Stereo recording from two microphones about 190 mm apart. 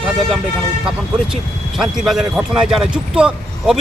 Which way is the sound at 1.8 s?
Centre (ahead or behind).